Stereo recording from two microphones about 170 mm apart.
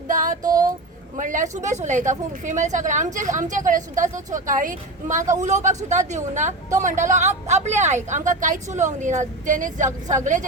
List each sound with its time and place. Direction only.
0.1 s female singing: 50° right (ahead or behind)
1.1 s a woman's voice: 50° right (ahead or behind)